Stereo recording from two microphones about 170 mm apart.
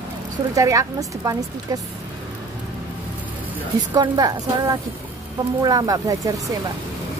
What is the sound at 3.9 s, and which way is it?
A woman's voice, 25° right (ahead or behind).